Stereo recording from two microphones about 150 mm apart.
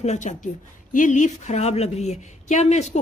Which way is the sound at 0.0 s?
50° left (ahead or behind).